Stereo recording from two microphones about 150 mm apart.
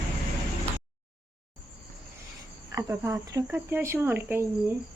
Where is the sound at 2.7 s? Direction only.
20° right (ahead or behind).